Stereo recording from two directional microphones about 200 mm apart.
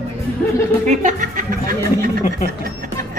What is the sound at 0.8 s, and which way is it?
Speech, 35° right (ahead or behind).